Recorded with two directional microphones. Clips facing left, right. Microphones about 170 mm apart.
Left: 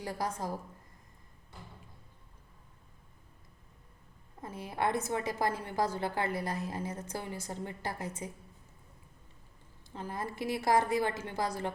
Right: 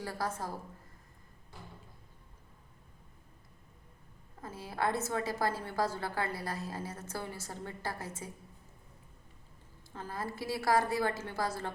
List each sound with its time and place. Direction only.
0.0 s a woman's voice: 15° left (ahead or behind)
4.4 s a woman's voice: 20° left (ahead or behind)
9.9 s a woman's voice: 20° left (ahead or behind)